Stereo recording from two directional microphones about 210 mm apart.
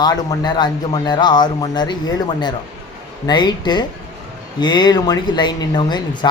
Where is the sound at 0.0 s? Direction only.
20° left (ahead or behind).